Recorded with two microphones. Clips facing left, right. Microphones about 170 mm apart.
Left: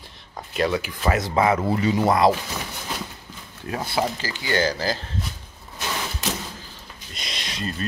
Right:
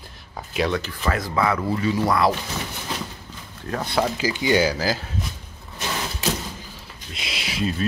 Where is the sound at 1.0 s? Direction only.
25° left (ahead or behind).